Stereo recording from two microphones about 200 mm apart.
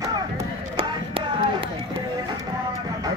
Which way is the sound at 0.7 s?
25° right (ahead or behind).